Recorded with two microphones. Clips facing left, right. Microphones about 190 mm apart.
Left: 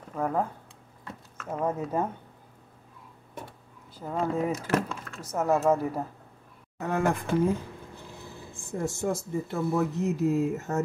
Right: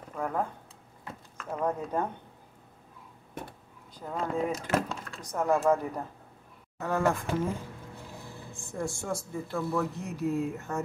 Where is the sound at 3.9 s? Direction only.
5° left (ahead or behind).